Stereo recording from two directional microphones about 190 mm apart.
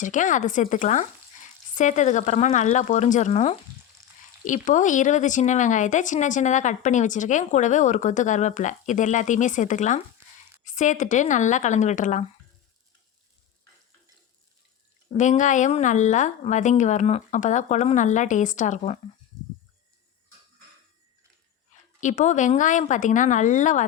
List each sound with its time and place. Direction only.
0.0 s speech: 40° left (ahead or behind)
15.1 s speech: 40° left (ahead or behind)
22.0 s speech: 40° left (ahead or behind)